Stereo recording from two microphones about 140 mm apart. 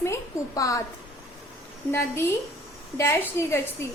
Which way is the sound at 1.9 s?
15° left (ahead or behind).